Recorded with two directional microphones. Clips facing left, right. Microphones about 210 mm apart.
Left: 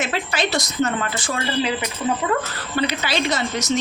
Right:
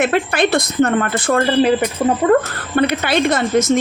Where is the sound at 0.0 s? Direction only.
55° right (ahead or behind).